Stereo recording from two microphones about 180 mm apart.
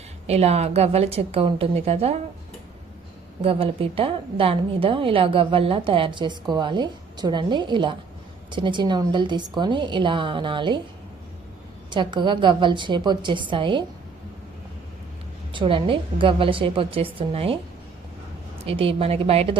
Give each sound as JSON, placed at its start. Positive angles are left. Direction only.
{"t": 0.3, "sound": "a woman's voice", "side_deg": -35}
{"t": 3.4, "sound": "a woman's voice", "side_deg": -30}
{"t": 11.9, "sound": "a woman's voice", "side_deg": -25}
{"t": 15.5, "sound": "a woman's voice", "side_deg": -30}
{"t": 18.6, "sound": "a woman's voice", "side_deg": -30}